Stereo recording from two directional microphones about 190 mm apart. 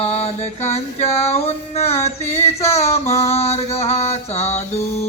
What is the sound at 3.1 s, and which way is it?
Mantra, 35° left (ahead or behind).